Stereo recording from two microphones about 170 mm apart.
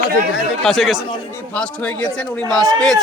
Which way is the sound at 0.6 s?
Centre (ahead or behind).